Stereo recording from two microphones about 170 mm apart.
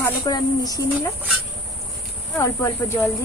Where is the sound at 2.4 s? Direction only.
15° left (ahead or behind).